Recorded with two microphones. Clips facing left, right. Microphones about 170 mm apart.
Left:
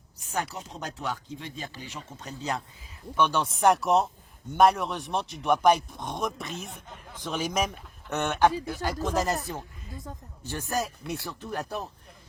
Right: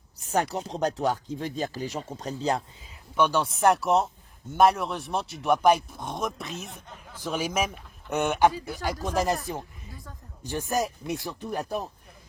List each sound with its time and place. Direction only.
0.3 s speech: 40° right (ahead or behind)
3.2 s speech: 10° right (ahead or behind)
10.4 s speech: 15° right (ahead or behind)